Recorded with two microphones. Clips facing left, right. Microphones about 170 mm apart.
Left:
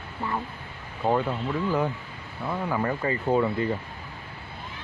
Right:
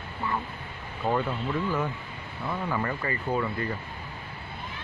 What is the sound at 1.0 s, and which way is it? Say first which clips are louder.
Speech: left 3 dB; 20° left (ahead or behind).